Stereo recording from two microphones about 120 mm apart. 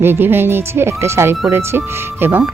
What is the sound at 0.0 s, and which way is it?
A woman's voice, 20° right (ahead or behind).